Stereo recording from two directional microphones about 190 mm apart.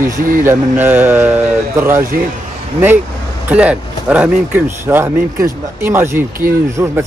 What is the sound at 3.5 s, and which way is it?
A man's voice, 5° right (ahead or behind).